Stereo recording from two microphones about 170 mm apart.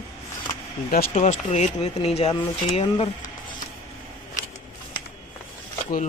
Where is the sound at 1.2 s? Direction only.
40° left (ahead or behind).